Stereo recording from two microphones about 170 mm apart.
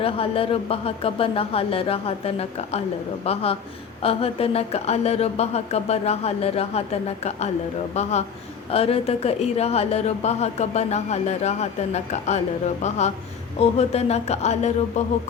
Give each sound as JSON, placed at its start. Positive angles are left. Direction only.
{"t": 0.0, "sound": "a woman's voice", "side_deg": 35}